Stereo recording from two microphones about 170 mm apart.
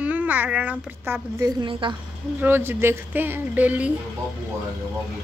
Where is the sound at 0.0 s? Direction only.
10° right (ahead or behind).